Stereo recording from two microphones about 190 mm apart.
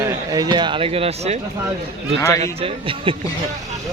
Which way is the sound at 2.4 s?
30° right (ahead or behind).